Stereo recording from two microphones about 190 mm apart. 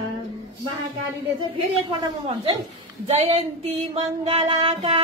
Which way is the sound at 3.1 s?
35° right (ahead or behind).